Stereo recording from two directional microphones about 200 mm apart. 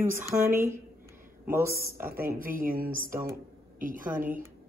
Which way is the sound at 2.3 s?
45° right (ahead or behind).